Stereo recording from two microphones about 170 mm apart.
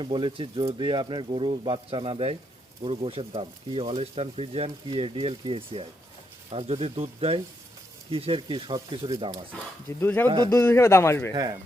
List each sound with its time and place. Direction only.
0.0 s speech: 30° right (ahead or behind)
10.0 s a man's voice: 10° left (ahead or behind)
10.2 s speech: 25° right (ahead or behind)
10.5 s a man's voice: 15° left (ahead or behind)
11.3 s speech: 20° right (ahead or behind)